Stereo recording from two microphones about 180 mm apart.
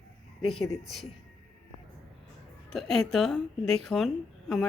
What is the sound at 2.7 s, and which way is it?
A woman's voice, centre (ahead or behind).